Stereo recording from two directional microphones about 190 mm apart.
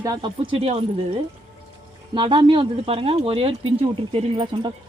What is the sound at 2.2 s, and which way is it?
Speech, 25° right (ahead or behind).